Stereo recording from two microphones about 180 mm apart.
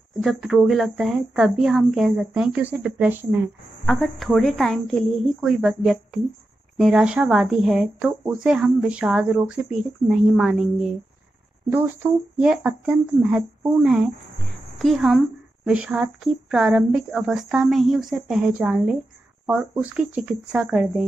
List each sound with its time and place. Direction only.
0.1 s speech: centre (ahead or behind)
3.8 s speech: 5° left (ahead or behind)
14.8 s speech: centre (ahead or behind)